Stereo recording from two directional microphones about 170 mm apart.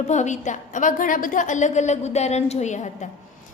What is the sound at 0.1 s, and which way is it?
A woman's voice, 45° left (ahead or behind).